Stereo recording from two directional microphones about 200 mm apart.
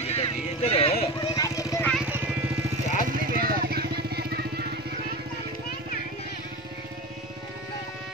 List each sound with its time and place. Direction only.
0.0 s a sound: 30° left (ahead or behind); by 2.0 s 10° left (ahead or behind)
2.0 s vehicle: 10° right (ahead or behind)
3.1 s vehicle: 45° right (ahead or behind)